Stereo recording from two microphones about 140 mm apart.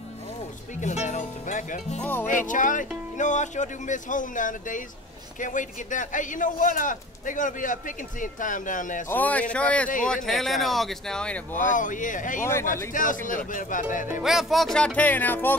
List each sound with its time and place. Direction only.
0.7 s speech: 60° left (ahead or behind)
2.0 s speech: 15° left (ahead or behind)
2.2 s a man's voice: 65° left (ahead or behind)
9.1 s speech: 10° left (ahead or behind)
11.5 s a man's voice: 65° left (ahead or behind)
14.2 s speech: centre (ahead or behind)
15.0 s speech: 15° left (ahead or behind)